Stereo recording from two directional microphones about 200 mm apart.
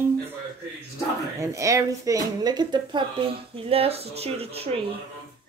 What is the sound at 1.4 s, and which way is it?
Speech, 15° right (ahead or behind).